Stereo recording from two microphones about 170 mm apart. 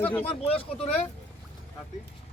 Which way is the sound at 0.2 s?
35° left (ahead or behind).